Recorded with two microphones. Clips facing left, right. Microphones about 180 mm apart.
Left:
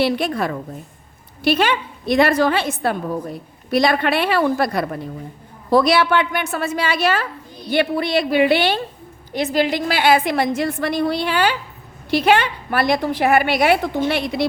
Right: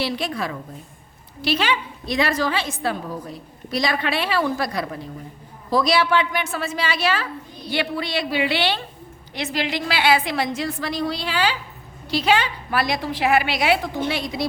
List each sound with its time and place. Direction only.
0.0 s a woman's voice: 55° left (ahead or behind)